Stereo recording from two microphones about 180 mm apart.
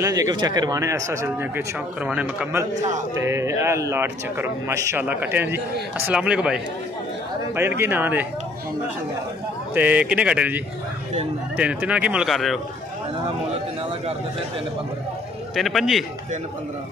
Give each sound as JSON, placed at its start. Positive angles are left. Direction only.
{"t": 0.0, "sound": "a man's voice", "side_deg": -20}
{"t": 9.8, "sound": "a man's voice", "side_deg": -10}
{"t": 15.5, "sound": "a man's voice", "side_deg": 0}